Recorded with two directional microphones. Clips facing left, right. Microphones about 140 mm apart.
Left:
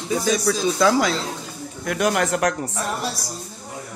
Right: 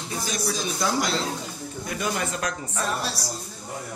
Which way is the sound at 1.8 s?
75° left (ahead or behind).